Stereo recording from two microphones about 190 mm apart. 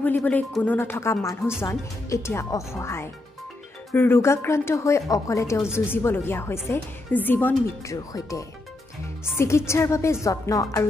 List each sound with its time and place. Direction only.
0.0 s a woman's voice: 10° left (ahead or behind)